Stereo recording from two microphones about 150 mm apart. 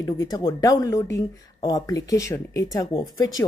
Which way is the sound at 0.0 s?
25° left (ahead or behind).